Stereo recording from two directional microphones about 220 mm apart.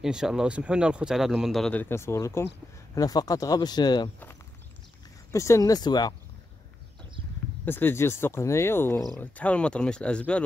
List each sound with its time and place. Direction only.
0.0 s speech: centre (ahead or behind); by 4.1 s 20° left (ahead or behind)
5.3 s speech: 15° left (ahead or behind)
7.6 s speech: 10° left (ahead or behind)